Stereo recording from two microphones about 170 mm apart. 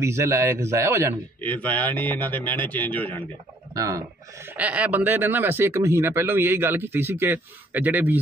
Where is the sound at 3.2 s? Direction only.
20° right (ahead or behind).